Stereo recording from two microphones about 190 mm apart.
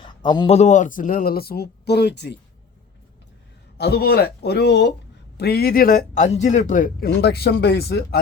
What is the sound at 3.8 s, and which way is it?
A man's voice, 55° left (ahead or behind).